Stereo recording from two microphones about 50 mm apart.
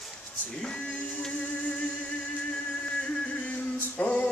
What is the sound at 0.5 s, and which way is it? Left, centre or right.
Music, centre.